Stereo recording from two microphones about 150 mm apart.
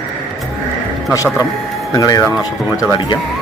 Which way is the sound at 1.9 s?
25° left (ahead or behind).